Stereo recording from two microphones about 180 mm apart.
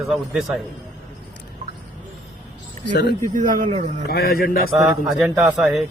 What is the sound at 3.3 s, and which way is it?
Speech, 45° right (ahead or behind).